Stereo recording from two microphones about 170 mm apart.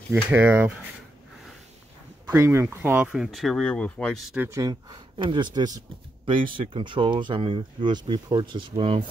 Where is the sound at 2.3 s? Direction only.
15° right (ahead or behind); by 4.3 s 5° left (ahead or behind).